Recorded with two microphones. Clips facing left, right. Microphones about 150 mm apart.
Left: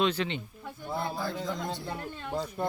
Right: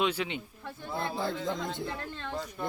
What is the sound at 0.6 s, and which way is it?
Speech, 15° left (ahead or behind).